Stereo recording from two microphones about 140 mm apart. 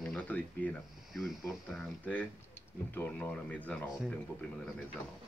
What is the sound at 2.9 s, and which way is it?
Speech, 10° left (ahead or behind).